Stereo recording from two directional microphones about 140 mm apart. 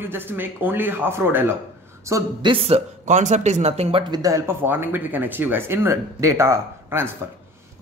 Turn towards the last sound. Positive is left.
turn(degrees=-15)  # may be behind; listen again after turning